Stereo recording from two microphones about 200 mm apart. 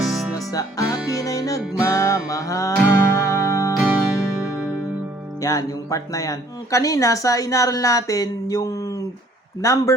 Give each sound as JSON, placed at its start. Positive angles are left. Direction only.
{"t": 0.0, "sound": "music", "side_deg": 0}
{"t": 0.3, "sound": "music", "side_deg": 15}
{"t": 5.4, "sound": "speech", "side_deg": 15}